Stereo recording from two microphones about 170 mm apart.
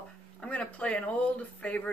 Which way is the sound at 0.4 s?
5° left (ahead or behind).